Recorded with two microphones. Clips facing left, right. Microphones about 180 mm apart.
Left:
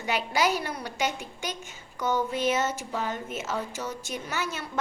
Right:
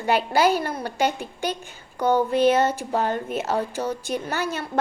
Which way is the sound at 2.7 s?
30° right (ahead or behind).